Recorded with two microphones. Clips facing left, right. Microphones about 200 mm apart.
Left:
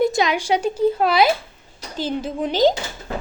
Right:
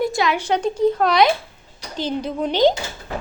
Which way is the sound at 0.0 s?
20° left (ahead or behind).